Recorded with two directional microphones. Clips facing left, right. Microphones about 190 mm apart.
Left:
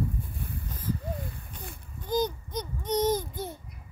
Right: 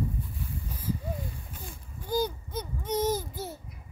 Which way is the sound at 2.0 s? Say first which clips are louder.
Left 1 dB; 10° right (ahead or behind).